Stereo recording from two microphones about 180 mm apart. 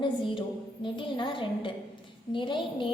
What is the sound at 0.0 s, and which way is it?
A woman's voice, 25° left (ahead or behind).